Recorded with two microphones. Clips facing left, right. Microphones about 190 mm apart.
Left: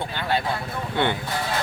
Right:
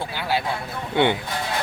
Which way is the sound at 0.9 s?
15° right (ahead or behind).